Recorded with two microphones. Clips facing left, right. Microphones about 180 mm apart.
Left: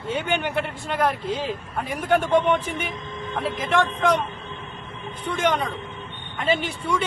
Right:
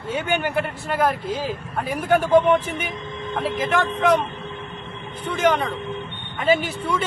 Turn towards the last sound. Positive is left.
turn(degrees=-5)  # may be behind; listen again after turning